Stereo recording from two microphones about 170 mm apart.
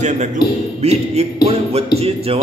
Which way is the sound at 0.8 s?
40° right (ahead or behind).